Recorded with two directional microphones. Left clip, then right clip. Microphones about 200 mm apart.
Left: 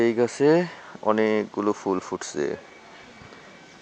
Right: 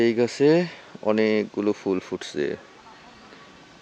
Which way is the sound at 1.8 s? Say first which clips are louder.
Even; 5° right (ahead or behind).